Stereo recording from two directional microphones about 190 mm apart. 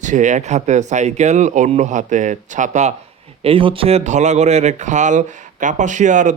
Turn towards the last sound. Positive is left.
turn(degrees=-40)  # may be behind; listen again after turning